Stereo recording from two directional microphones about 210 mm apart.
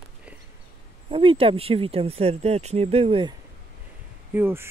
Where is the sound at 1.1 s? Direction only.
25° right (ahead or behind).